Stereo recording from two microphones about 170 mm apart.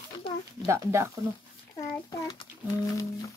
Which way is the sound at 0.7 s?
15° right (ahead or behind).